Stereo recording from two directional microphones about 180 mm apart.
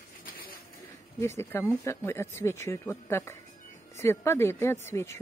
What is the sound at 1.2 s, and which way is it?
Speech, 15° left (ahead or behind).